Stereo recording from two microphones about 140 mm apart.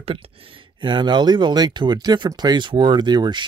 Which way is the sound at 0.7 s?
35° right (ahead or behind).